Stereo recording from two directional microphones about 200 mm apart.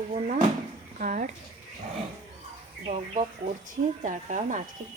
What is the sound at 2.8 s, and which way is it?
Speech, 35° right (ahead or behind).